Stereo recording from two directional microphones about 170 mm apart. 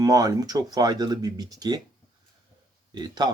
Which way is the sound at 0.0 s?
20° right (ahead or behind).